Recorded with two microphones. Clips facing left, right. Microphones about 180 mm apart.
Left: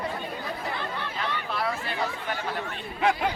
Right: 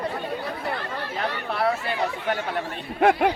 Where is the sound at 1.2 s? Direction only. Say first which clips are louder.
Right 4 dB; 45° right (ahead or behind).